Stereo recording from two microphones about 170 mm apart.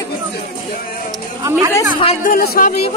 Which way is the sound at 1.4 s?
20° right (ahead or behind).